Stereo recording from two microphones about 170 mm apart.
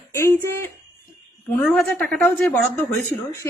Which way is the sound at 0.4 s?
15° left (ahead or behind).